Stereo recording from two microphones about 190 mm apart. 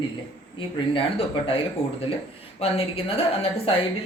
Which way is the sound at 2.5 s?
30° left (ahead or behind).